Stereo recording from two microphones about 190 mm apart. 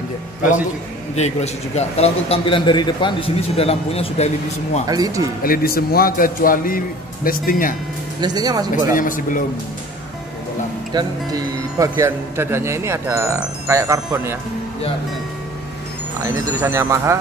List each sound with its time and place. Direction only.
1.1 s a man's voice: 35° left (ahead or behind)
4.8 s speech: 20° right (ahead or behind)
5.4 s a man's voice: 50° left (ahead or behind)
8.2 s speech: 20° right (ahead or behind)
8.9 s a man's voice: 45° left (ahead or behind)
10.9 s speech: 20° right (ahead or behind)
16.2 s speech: 15° right (ahead or behind)